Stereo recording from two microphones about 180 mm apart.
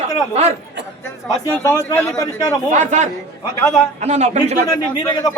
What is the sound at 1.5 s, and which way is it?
A man's voice, 15° left (ahead or behind).